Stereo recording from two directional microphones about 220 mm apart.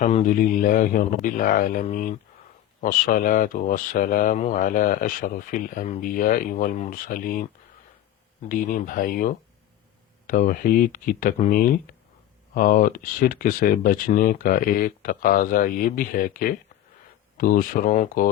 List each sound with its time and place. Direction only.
0.0 s speech: 35° left (ahead or behind)
8.4 s speech: 40° left (ahead or behind)